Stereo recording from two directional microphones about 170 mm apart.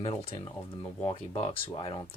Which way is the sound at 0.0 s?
35° left (ahead or behind).